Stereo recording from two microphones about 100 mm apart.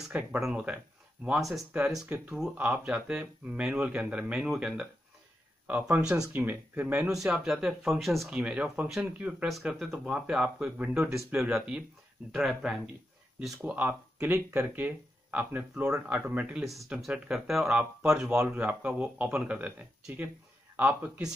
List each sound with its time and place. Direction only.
0.4 s speech: 10° right (ahead or behind)
2.0 s speech: 15° right (ahead or behind)
2.3 s speech: 5° right (ahead or behind)
6.3 s speech: 20° right (ahead or behind); by 12.9 s centre (ahead or behind)
13.6 s speech: 15° right (ahead or behind)
16.6 s speech: centre (ahead or behind)
20.7 s speech: 20° right (ahead or behind)